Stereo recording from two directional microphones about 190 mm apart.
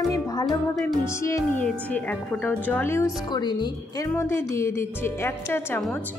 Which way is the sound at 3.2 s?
20° left (ahead or behind).